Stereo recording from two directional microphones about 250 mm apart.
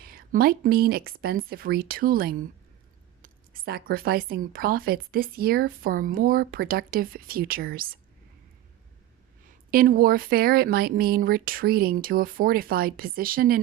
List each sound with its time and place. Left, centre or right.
0.0 s speech: right
9.5 s speech: right